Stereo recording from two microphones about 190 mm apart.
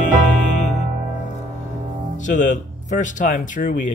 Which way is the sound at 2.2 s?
40° left (ahead or behind).